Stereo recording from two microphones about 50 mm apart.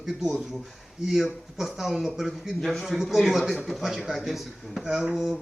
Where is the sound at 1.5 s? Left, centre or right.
Centre.